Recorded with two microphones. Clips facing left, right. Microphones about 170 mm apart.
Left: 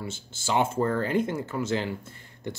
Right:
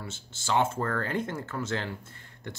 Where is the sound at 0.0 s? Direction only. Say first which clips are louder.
Left 5 dB; 5° left (ahead or behind).